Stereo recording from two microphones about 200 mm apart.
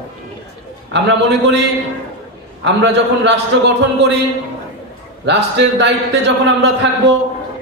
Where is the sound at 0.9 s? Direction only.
60° right (ahead or behind).